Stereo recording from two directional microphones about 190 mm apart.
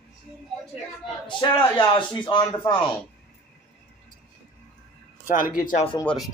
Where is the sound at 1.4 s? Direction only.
25° left (ahead or behind).